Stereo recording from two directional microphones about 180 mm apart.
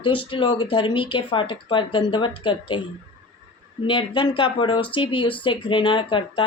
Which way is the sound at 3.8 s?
25° left (ahead or behind).